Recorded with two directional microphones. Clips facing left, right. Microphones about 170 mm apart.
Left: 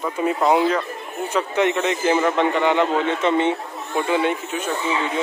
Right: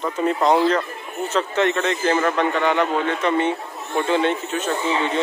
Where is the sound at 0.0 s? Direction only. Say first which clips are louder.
Even; 5° left (ahead or behind).